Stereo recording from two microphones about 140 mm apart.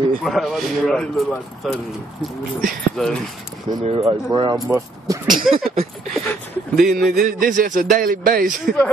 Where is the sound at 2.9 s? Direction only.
5° left (ahead or behind).